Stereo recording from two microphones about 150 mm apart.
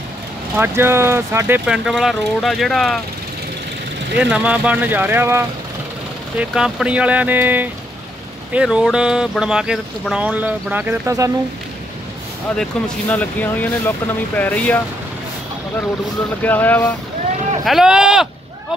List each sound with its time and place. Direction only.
0.6 s speech: 15° right (ahead or behind)
1.7 s speech: 5° right (ahead or behind)
4.2 s speech: 10° right (ahead or behind)
6.3 s speech: 5° right (ahead or behind); by 11.3 s 20° right (ahead or behind)
12.5 s speech: 5° left (ahead or behind)
16.4 s speech: 10° left (ahead or behind)
17.6 s speech: 5° right (ahead or behind)